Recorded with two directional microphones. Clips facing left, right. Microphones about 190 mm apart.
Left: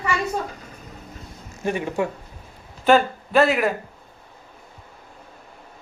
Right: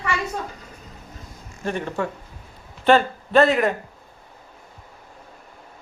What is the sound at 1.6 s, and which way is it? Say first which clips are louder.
A man's voice: left 2 dB; 15° left (ahead or behind).